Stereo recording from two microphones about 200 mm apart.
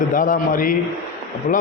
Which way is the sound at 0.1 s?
40° left (ahead or behind).